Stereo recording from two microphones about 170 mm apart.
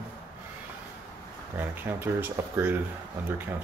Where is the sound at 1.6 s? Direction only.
10° right (ahead or behind).